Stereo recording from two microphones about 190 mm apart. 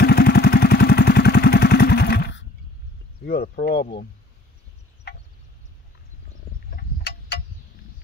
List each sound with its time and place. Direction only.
0.0 s vehicle: 55° left (ahead or behind)
3.5 s speech: 55° left (ahead or behind)
6.7 s a sound: 55° left (ahead or behind)